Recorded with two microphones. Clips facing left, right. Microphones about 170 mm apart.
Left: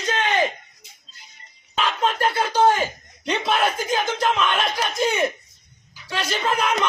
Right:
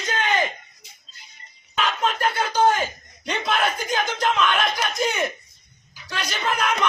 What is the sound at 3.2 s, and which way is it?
Speech, 25° left (ahead or behind).